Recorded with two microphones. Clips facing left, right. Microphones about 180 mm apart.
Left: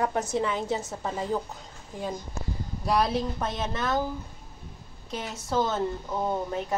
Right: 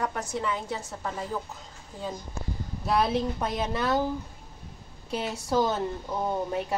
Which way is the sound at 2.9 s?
5° right (ahead or behind).